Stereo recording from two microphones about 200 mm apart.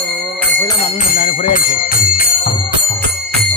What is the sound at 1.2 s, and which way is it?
Speech, 30° left (ahead or behind).